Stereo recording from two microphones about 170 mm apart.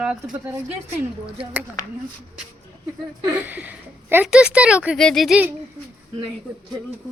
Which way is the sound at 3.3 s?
10° right (ahead or behind).